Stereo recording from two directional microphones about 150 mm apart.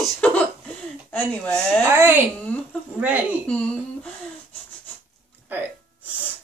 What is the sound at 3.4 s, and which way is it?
Speech, 5° left (ahead or behind).